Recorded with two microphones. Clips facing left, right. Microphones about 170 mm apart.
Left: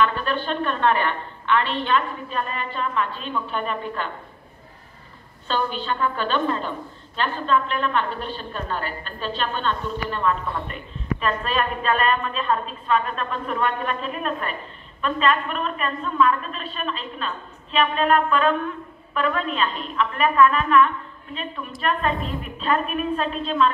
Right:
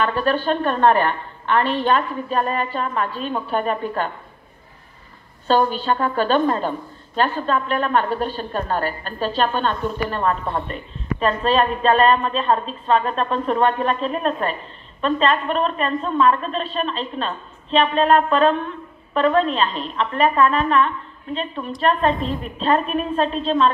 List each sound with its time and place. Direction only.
0.0 s a woman's voice: 40° right (ahead or behind)
5.5 s a woman's voice: 40° right (ahead or behind)